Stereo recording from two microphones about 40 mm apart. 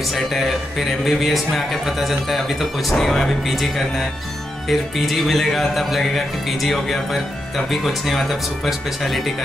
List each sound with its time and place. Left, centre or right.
0.0 s speech: centre